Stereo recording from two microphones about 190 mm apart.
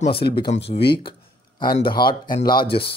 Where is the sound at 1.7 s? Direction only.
25° left (ahead or behind).